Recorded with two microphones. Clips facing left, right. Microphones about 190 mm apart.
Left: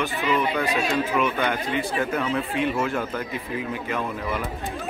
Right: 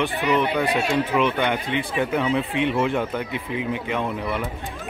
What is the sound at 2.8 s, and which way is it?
A man's voice, 15° right (ahead or behind).